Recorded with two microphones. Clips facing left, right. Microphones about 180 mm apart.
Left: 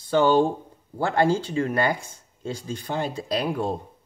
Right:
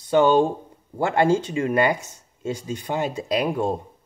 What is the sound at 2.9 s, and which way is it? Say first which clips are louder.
Speech: right 3 dB; 15° right (ahead or behind).